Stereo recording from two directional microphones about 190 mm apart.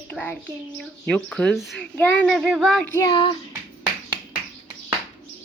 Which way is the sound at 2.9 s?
25° left (ahead or behind).